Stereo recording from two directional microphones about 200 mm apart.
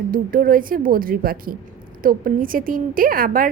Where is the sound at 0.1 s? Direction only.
45° right (ahead or behind).